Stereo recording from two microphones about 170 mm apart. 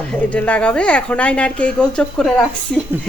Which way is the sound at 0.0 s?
5° left (ahead or behind).